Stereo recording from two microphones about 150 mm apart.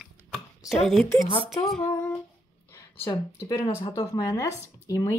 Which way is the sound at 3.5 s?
25° left (ahead or behind).